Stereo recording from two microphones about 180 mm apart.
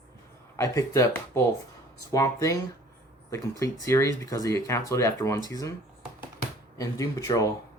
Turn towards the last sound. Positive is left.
turn(degrees=20)  # may be behind; listen again after turning